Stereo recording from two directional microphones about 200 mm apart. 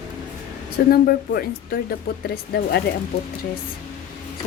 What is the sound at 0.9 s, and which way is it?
Speech, 50° left (ahead or behind).